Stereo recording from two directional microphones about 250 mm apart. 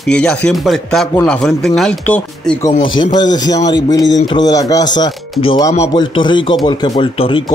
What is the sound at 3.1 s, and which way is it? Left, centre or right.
Speech, centre.